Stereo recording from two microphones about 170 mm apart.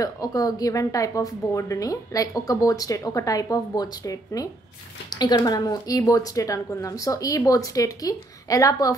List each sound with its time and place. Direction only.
0.0 s a woman's voice: 20° left (ahead or behind)